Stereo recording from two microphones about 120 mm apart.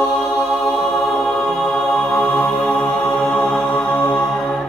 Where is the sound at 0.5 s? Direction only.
Centre (ahead or behind).